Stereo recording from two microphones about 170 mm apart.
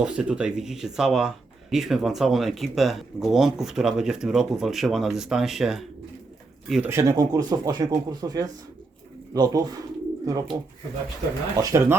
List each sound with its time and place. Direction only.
0.0 s speech: 5° right (ahead or behind)
6.9 s speech: 15° right (ahead or behind)